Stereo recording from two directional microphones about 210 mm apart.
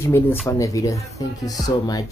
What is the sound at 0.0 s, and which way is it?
Speech, 10° left (ahead or behind).